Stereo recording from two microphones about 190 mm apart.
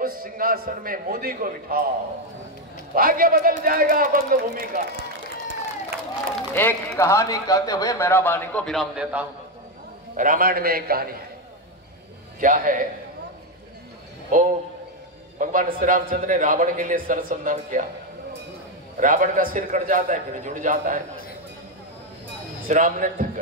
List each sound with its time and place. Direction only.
0.0 s a man's voice: 50° right (ahead or behind)
2.9 s a man's voice: 50° right (ahead or behind)
6.5 s speech: 10° left (ahead or behind); by 9.3 s 5° right (ahead or behind)
10.1 s a man's voice: 45° right (ahead or behind)
12.4 s a man's voice: 45° right (ahead or behind)
14.3 s a man's voice: 45° right (ahead or behind)
18.9 s a man's voice: 45° right (ahead or behind)
22.7 s a man's voice: 45° right (ahead or behind)